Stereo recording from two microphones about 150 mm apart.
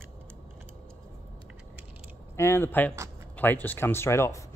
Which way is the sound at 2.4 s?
15° left (ahead or behind).